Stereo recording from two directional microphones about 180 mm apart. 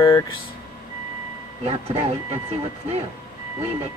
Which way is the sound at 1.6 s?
35° right (ahead or behind).